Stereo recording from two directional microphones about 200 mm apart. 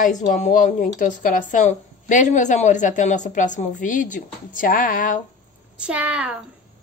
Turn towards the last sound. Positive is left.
turn(degrees=-5)  # may be behind; listen again after turning